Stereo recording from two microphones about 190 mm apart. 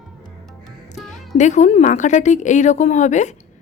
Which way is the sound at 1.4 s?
40° left (ahead or behind).